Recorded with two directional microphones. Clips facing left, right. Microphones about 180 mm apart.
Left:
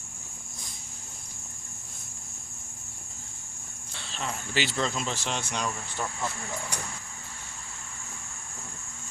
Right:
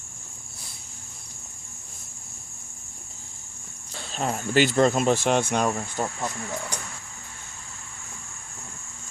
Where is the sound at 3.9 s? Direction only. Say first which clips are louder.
Right 7 dB; 45° right (ahead or behind).